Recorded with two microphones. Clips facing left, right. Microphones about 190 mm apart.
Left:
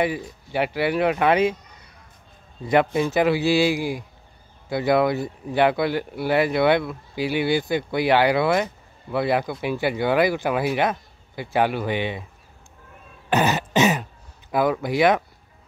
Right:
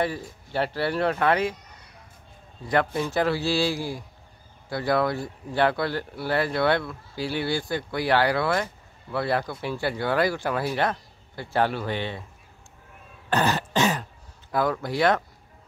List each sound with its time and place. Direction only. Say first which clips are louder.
0.0 s speech: left 3 dB; 15° left (ahead or behind)
2.6 s speech: left 5 dB; 20° left (ahead or behind)
13.3 s throat clearing: left 3 dB; 20° left (ahead or behind)
14.5 s speech: left 4 dB; 15° left (ahead or behind)